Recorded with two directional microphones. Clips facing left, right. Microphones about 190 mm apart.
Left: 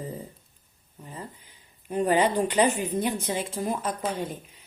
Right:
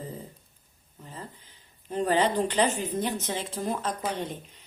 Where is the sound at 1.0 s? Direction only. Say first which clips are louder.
Left 2 dB; 10° left (ahead or behind).